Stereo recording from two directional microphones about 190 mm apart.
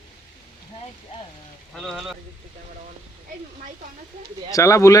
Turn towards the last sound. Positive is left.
turn(degrees=15)  # may be behind; listen again after turning